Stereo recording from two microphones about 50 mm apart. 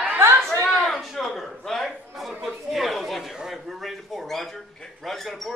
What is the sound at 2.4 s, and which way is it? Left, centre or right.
Chatter, centre.